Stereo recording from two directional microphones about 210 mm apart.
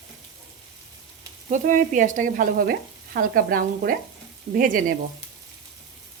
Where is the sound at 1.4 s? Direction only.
35° right (ahead or behind).